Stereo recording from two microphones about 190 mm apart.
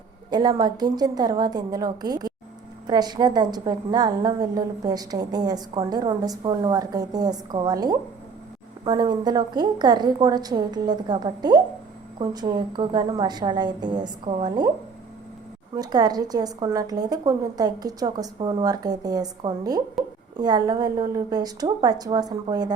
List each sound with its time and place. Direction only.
0.3 s a woman's voice: 20° right (ahead or behind)
15.7 s a woman's voice: 20° right (ahead or behind)